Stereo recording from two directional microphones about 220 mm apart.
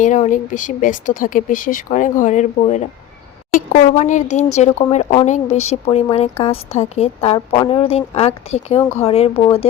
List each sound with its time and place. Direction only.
0.0 s speech: 35° left (ahead or behind)